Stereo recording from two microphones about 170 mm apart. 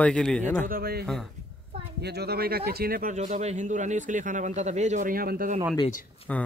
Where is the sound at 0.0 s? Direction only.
5° left (ahead or behind).